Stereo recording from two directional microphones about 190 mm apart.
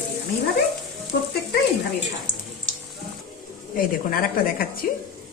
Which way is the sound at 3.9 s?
50° left (ahead or behind).